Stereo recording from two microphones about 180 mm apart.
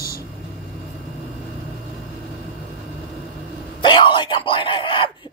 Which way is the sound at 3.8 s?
25° left (ahead or behind).